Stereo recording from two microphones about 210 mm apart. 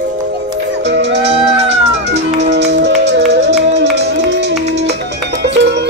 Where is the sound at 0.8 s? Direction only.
55° right (ahead or behind).